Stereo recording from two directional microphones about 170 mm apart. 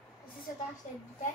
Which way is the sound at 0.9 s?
50° left (ahead or behind).